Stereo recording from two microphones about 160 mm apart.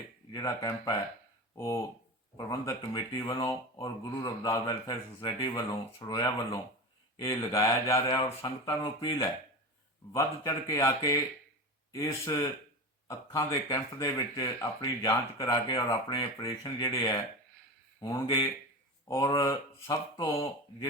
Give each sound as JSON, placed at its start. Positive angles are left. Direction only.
{"t": 0.3, "sound": "speech", "side_deg": 25}